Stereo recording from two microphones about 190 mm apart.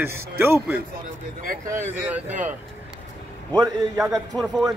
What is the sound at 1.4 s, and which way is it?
Speech, 45° right (ahead or behind).